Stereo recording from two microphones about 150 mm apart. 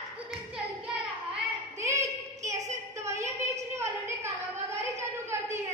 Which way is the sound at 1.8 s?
20° right (ahead or behind).